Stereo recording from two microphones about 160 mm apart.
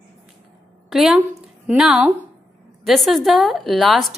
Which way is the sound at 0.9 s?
Centre (ahead or behind).